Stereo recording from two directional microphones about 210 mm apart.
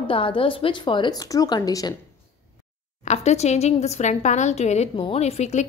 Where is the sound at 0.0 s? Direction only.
25° left (ahead or behind).